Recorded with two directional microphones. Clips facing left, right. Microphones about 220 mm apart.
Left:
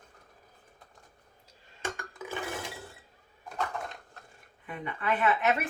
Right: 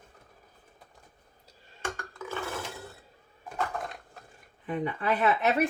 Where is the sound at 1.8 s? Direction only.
15° left (ahead or behind).